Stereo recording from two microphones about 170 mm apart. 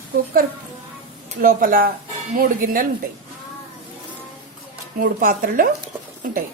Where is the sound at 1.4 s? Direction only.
55° right (ahead or behind).